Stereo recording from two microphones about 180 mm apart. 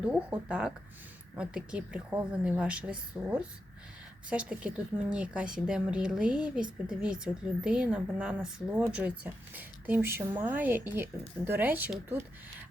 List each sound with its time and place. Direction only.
0.0 s speech: 5° right (ahead or behind)